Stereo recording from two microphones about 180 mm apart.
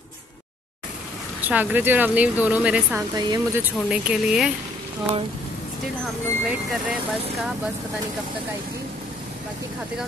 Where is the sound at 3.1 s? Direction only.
20° right (ahead or behind).